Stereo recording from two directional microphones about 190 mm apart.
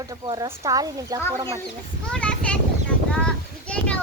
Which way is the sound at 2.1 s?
5° left (ahead or behind).